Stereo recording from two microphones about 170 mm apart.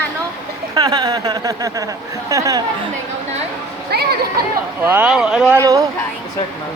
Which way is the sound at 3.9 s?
70° right (ahead or behind).